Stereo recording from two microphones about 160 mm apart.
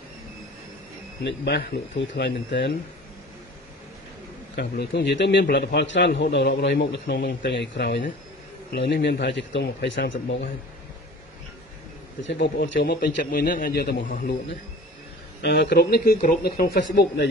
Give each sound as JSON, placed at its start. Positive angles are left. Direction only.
{"t": 1.2, "sound": "a man's voice", "side_deg": 90}
{"t": 4.6, "sound": "a man's voice", "side_deg": 90}
{"t": 12.3, "sound": "a man's voice", "side_deg": 90}
{"t": 15.4, "sound": "a man's voice", "side_deg": 85}
{"t": 16.2, "sound": "a man's voice", "side_deg": 60}